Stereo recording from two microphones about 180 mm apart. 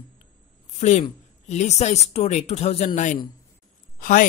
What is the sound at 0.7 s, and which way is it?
A woman's voice, 40° left (ahead or behind).